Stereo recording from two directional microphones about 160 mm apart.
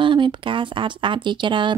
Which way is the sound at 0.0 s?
30° right (ahead or behind).